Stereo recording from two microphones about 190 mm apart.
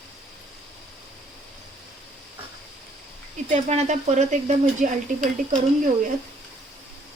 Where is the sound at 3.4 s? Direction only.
35° right (ahead or behind).